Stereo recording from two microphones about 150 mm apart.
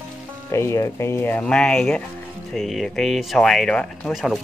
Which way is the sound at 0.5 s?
20° left (ahead or behind).